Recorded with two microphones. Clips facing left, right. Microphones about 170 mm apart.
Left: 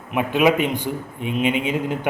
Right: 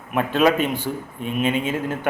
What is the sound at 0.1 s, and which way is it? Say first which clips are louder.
A man's voice: even; 15° left (ahead or behind).